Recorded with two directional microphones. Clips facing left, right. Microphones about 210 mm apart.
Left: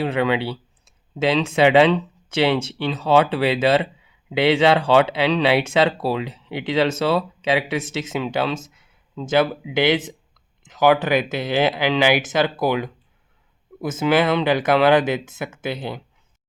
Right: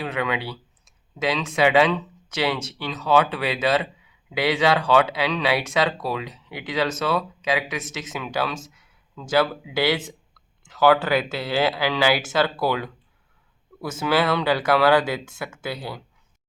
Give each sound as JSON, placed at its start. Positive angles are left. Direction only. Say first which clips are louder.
{"t": 0.0, "sound": "speech", "louder": "left 6 dB", "side_deg": 30}